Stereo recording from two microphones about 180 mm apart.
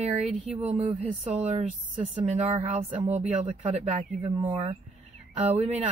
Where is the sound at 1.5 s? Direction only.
40° right (ahead or behind).